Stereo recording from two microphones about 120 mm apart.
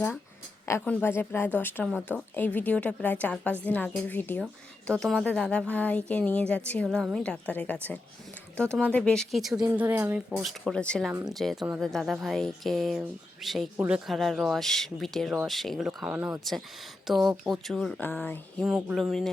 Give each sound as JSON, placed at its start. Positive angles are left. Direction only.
{"t": 0.9, "sound": "a woman's voice", "side_deg": 15}
{"t": 4.9, "sound": "a woman's voice", "side_deg": 5}
{"t": 9.6, "sound": "speech", "side_deg": -15}
{"t": 10.2, "sound": "speech", "side_deg": -5}
{"t": 10.7, "sound": "a woman's voice", "side_deg": 5}
{"t": 14.1, "sound": "speech", "side_deg": 0}
{"t": 16.4, "sound": "speech", "side_deg": 0}
{"t": 18.0, "sound": "a woman's voice", "side_deg": 15}
{"t": 18.6, "sound": "speech", "side_deg": -5}